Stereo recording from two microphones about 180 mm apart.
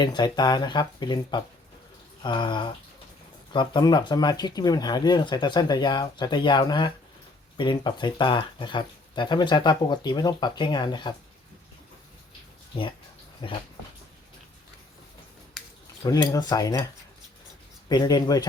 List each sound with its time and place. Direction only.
0.0 s speech: 25° left (ahead or behind)
13.4 s speech: 25° left (ahead or behind)
16.0 s speech: 20° left (ahead or behind)
17.8 s speech: 25° left (ahead or behind)